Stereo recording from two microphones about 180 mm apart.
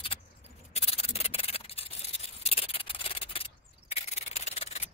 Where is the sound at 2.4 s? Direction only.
35° left (ahead or behind).